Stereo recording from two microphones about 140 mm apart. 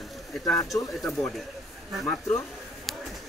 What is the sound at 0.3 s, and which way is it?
Speech, 5° left (ahead or behind).